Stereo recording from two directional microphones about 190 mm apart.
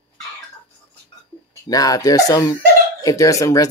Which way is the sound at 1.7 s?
20° left (ahead or behind).